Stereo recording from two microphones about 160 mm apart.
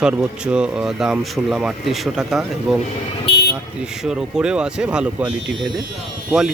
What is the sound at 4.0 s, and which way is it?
Speech, 5° right (ahead or behind).